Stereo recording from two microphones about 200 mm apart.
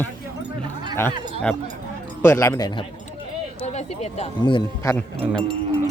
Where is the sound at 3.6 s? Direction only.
35° left (ahead or behind).